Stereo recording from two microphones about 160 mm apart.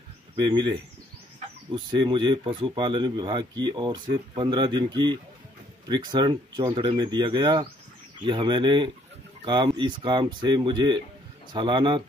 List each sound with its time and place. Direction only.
0.4 s speech: 25° right (ahead or behind)